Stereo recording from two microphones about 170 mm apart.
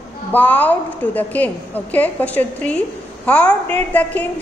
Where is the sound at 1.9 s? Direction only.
10° left (ahead or behind).